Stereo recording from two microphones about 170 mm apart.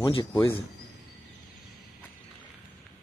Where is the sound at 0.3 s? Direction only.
10° left (ahead or behind).